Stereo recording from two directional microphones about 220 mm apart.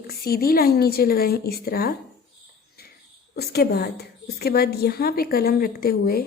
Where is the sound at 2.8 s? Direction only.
45° left (ahead or behind).